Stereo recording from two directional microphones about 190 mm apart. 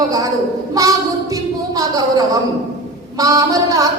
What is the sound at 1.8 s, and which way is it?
Music, 20° right (ahead or behind).